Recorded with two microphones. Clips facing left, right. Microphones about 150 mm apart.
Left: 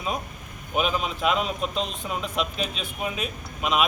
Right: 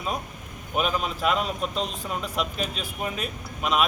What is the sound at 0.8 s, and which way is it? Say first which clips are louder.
Speech: left 1 dB; centre (ahead or behind).